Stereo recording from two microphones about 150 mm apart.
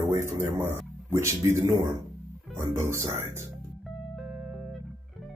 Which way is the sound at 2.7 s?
20° right (ahead or behind).